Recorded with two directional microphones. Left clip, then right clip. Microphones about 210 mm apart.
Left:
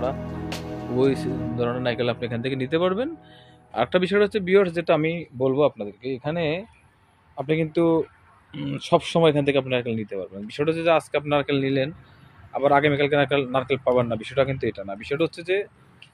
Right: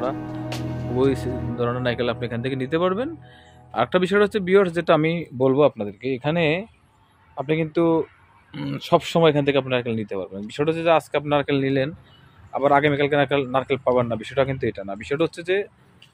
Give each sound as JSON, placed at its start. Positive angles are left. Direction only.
{"t": 0.0, "sound": "speech", "side_deg": 0}
{"t": 7.3, "sound": "speech", "side_deg": 0}